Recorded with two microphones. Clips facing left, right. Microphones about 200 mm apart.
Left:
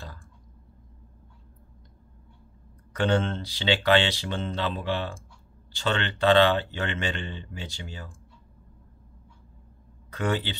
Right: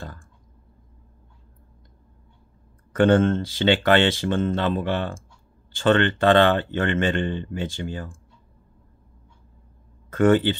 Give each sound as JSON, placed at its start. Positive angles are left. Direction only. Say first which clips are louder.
{"t": 2.9, "sound": "speech", "louder": "right 8 dB", "side_deg": -50}
{"t": 10.0, "sound": "speech", "louder": "right 11 dB", "side_deg": -50}